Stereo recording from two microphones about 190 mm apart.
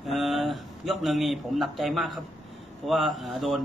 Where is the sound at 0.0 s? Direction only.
Centre (ahead or behind).